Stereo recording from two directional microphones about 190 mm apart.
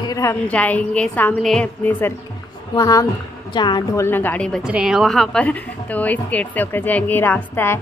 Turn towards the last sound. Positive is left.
turn(degrees=10)  # may be behind; listen again after turning